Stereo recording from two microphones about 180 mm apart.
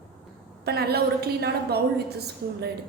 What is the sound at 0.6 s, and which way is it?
A woman's voice, 60° right (ahead or behind).